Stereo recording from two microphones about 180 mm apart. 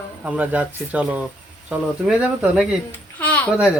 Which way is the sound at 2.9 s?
10° left (ahead or behind).